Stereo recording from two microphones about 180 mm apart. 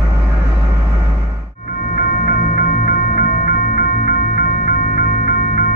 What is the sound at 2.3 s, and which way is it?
Music, 55° left (ahead or behind).